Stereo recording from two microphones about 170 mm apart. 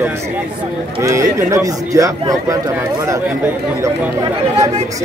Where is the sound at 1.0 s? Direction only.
15° right (ahead or behind).